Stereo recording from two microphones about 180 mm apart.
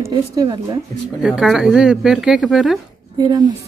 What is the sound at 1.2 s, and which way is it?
Speech, centre (ahead or behind).